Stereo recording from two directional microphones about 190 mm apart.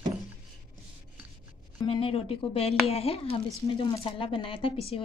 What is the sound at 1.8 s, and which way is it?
Speech, 30° left (ahead or behind).